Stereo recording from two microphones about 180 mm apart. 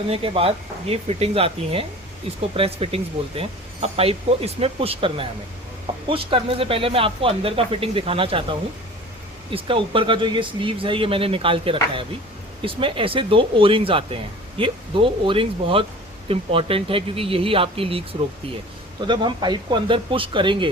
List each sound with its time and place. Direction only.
0.1 s speech: 30° right (ahead or behind)